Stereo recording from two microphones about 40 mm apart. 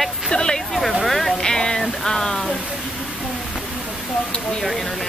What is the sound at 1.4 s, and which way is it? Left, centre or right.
Speech, centre.